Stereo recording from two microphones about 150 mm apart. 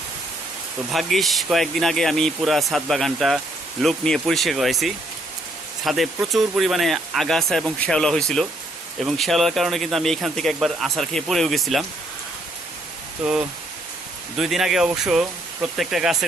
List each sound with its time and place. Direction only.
0.9 s speech: centre (ahead or behind)
14.3 s speech: 5° right (ahead or behind)